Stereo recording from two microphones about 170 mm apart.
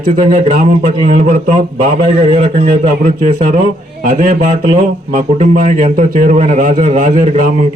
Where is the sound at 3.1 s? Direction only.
45° right (ahead or behind).